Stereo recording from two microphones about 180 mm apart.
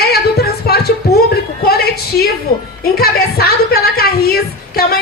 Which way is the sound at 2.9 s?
60° left (ahead or behind).